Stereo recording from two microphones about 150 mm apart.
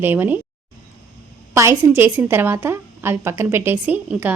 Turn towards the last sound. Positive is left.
turn(degrees=-10)  # may be behind; listen again after turning